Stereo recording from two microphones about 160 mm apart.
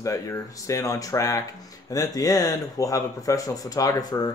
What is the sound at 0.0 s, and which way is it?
Speech, 20° left (ahead or behind).